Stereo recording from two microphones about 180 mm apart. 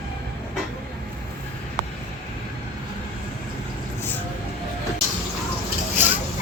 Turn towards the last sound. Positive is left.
turn(degrees=-10)  # may be behind; listen again after turning